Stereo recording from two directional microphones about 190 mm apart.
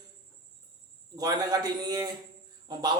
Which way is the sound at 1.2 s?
20° right (ahead or behind).